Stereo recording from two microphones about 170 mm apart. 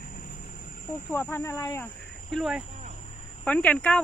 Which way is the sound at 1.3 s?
15° left (ahead or behind).